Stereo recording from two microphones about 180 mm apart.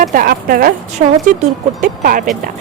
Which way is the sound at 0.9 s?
40° right (ahead or behind).